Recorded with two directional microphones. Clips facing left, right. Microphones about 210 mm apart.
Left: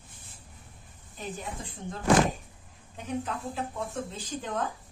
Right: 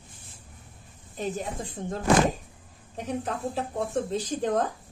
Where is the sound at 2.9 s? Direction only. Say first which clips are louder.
Right 2 dB; 35° right (ahead or behind).